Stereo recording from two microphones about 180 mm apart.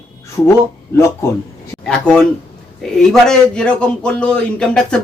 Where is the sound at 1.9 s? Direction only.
5° left (ahead or behind).